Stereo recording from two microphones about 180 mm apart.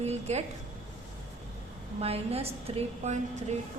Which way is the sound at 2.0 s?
35° right (ahead or behind).